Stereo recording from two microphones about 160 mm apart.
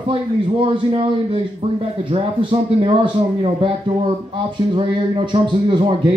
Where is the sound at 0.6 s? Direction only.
35° right (ahead or behind).